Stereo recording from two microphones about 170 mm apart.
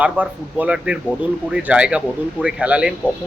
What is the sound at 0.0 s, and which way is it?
Speech, 10° right (ahead or behind).